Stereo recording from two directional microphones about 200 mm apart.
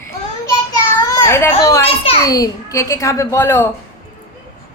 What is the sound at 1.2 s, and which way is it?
A woman's voice, 15° left (ahead or behind).